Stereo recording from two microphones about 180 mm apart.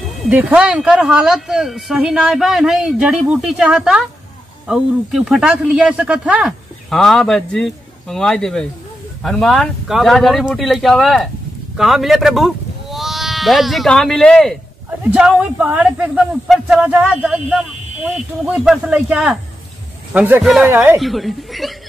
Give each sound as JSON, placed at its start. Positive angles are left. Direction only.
{"t": 0.2, "sound": "a man's voice", "side_deg": -10}
{"t": 20.7, "sound": "speech", "side_deg": -10}
{"t": 21.0, "sound": "speech", "side_deg": 0}